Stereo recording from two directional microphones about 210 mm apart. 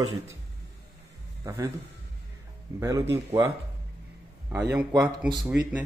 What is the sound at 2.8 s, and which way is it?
Speech, 15° right (ahead or behind).